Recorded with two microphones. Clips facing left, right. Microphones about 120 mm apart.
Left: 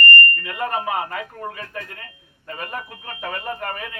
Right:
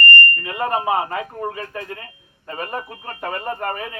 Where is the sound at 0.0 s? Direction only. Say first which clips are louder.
Even; 30° right (ahead or behind).